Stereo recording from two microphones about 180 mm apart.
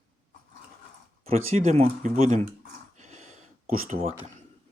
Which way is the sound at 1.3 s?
40° right (ahead or behind).